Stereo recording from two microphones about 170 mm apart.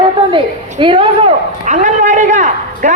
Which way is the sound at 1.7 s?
45° right (ahead or behind).